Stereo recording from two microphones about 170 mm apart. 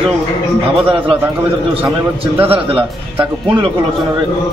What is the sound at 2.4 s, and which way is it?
Speech, 35° right (ahead or behind).